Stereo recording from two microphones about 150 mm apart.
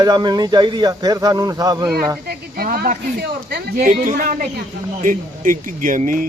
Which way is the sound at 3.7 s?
55° right (ahead or behind).